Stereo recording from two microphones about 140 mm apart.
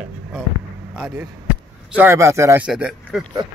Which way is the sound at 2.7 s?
5° right (ahead or behind).